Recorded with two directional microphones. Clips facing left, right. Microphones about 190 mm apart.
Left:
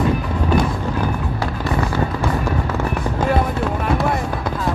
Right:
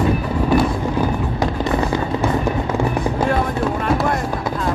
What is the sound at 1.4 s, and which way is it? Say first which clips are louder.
Fireworks: right 3 dB; 15° right (ahead or behind).